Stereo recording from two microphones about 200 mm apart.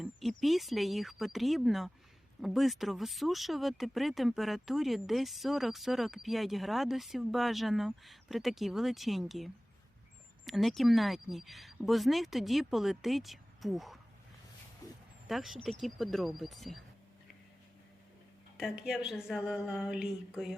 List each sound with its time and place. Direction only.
0.0 s speech: centre (ahead or behind)
14.8 s dog: 15° left (ahead or behind)
15.3 s speech: centre (ahead or behind)
18.5 s speech: 5° right (ahead or behind)